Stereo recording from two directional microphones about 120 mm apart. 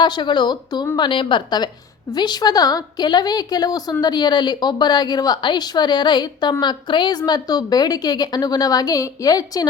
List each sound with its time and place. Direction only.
0.0 s a woman's voice: 40° left (ahead or behind)